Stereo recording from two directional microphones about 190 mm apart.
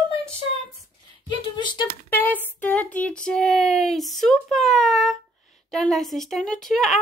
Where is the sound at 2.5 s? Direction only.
10° left (ahead or behind).